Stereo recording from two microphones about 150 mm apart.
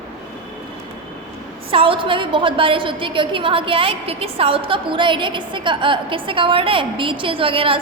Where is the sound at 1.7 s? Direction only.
35° right (ahead or behind).